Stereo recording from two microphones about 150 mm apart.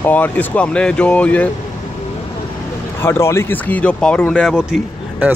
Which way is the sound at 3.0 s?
20° left (ahead or behind).